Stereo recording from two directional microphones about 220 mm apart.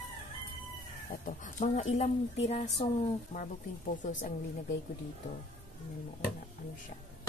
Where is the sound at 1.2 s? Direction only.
35° left (ahead or behind).